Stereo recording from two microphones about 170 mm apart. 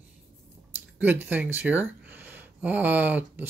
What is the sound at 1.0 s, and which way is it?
Speech, 10° right (ahead or behind).